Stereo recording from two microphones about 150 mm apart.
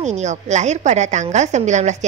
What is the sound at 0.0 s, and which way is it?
A woman's voice, 50° right (ahead or behind).